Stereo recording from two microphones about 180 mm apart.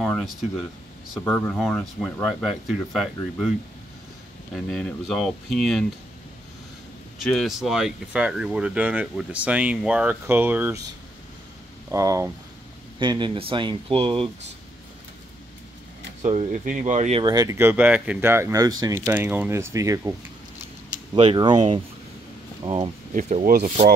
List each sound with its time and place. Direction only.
0.0 s speech: centre (ahead or behind)
4.6 s speech: 5° left (ahead or behind)
7.2 s speech: centre (ahead or behind)
11.9 s speech: 15° right (ahead or behind)
16.2 s speech: 40° right (ahead or behind)
17.2 s speech: 20° right (ahead or behind)
21.1 s speech: 25° right (ahead or behind)
23.1 s speech: 40° right (ahead or behind)
23.4 s speech: 55° right (ahead or behind)